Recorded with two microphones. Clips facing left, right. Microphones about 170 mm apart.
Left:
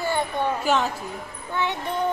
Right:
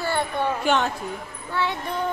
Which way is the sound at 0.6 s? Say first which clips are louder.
Right 1 dB; centre (ahead or behind).